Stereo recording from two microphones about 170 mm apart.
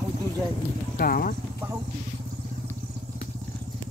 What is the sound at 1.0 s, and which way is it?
Speech, 60° left (ahead or behind).